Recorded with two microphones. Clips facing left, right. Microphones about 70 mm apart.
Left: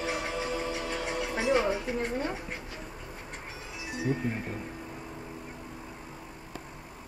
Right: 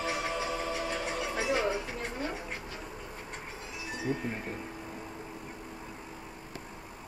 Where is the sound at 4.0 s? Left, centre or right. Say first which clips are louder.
Left 3 dB; centre.